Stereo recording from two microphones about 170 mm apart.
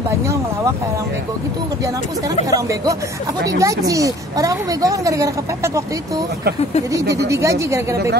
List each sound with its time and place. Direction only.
2.5 s speech: 20° right (ahead or behind)
7.2 s speech: 15° right (ahead or behind)